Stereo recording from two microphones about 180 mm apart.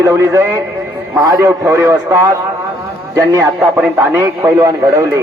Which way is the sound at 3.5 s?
5° right (ahead or behind).